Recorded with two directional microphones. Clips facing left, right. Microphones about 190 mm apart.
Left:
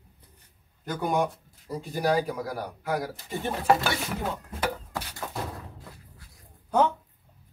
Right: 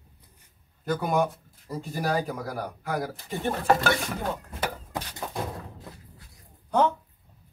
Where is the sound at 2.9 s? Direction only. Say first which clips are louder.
Left 1 dB; centre (ahead or behind).